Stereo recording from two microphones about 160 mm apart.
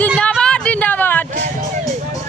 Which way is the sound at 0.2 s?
5° left (ahead or behind).